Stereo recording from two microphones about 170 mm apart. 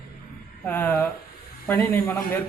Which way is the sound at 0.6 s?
10° left (ahead or behind).